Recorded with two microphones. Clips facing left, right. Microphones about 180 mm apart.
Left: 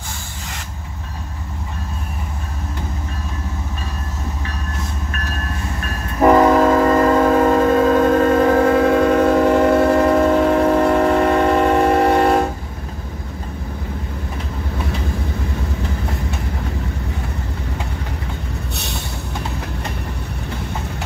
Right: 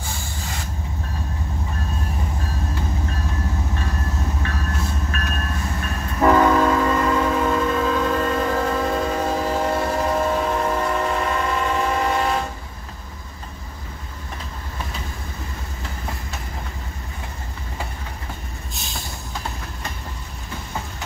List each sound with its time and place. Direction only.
6.3 s train: 40° left (ahead or behind)